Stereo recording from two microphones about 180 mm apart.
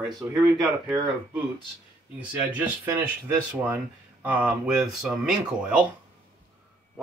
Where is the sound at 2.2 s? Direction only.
10° right (ahead or behind).